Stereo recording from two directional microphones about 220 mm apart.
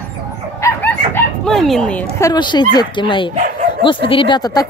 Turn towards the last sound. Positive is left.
turn(degrees=20)  # may be behind; listen again after turning